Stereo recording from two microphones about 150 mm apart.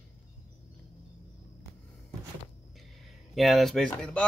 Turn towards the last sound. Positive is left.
turn(degrees=5)  # may be behind; listen again after turning